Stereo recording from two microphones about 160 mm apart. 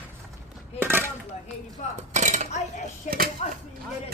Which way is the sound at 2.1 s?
50° right (ahead or behind).